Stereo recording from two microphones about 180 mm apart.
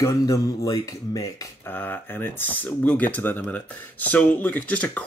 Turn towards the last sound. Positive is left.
turn(degrees=5)  # may be behind; listen again after turning